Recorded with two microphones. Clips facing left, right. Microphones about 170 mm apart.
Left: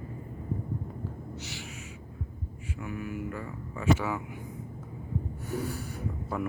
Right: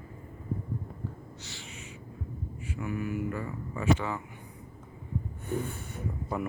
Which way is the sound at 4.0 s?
5° left (ahead or behind).